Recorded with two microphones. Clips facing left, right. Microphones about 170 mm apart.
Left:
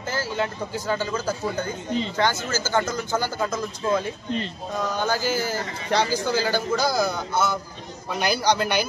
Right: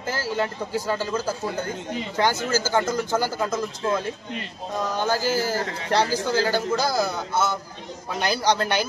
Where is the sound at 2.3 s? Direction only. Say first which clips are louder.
Right 4 dB; 35° right (ahead or behind).